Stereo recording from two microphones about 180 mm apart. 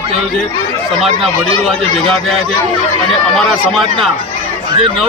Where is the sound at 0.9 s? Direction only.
Centre (ahead or behind).